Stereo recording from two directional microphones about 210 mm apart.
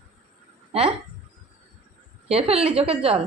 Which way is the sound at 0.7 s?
30° right (ahead or behind).